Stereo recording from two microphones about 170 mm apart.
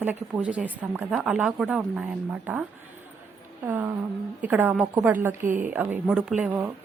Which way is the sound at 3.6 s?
10° right (ahead or behind).